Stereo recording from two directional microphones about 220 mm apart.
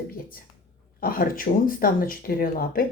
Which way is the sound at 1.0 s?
40° left (ahead or behind).